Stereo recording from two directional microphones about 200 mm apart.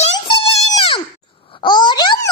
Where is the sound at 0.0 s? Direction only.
30° left (ahead or behind).